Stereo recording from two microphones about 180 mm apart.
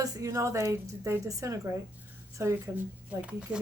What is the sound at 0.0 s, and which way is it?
Speech, 20° right (ahead or behind).